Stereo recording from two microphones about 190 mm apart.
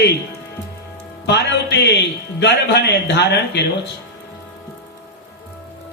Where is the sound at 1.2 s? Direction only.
65° left (ahead or behind).